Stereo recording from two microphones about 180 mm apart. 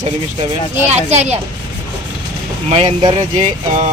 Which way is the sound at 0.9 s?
40° right (ahead or behind).